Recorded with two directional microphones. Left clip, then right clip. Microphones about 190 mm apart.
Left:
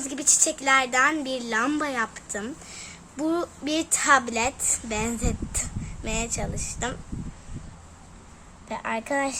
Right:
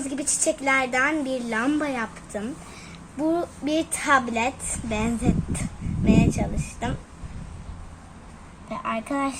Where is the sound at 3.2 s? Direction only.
25° left (ahead or behind).